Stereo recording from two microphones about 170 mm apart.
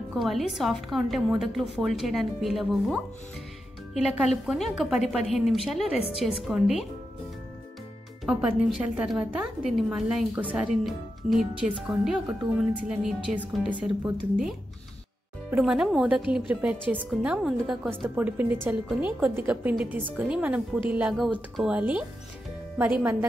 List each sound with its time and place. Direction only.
0.1 s speech: centre (ahead or behind)
5.9 s speech: 35° left (ahead or behind)
6.4 s speech: centre (ahead or behind)
8.3 s speech: 5° right (ahead or behind)
15.5 s a woman's voice: 5° right (ahead or behind)